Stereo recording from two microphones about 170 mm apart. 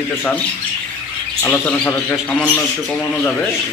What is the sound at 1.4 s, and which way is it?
A man's voice, 10° left (ahead or behind).